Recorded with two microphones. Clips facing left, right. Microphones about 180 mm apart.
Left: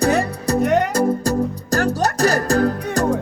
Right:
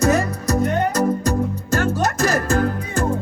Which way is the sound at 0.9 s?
30° left (ahead or behind).